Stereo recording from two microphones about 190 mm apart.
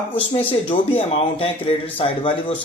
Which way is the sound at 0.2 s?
30° left (ahead or behind).